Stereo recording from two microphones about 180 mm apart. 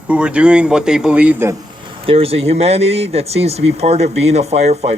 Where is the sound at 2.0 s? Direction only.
30° right (ahead or behind).